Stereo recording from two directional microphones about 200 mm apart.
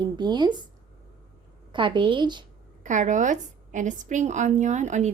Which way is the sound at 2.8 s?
40° right (ahead or behind).